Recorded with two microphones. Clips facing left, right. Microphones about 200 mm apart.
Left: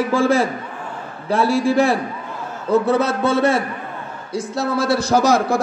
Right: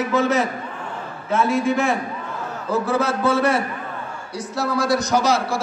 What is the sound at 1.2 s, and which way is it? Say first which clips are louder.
A man's voice: left 2 dB; 35° left (ahead or behind).